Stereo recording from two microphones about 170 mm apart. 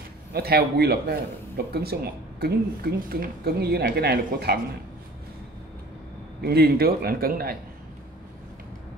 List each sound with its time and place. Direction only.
0.3 s a man's voice: 65° right (ahead or behind)
6.4 s a man's voice: 65° right (ahead or behind)